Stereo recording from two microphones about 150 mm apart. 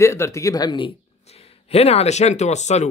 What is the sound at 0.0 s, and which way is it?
A man's voice, 20° left (ahead or behind).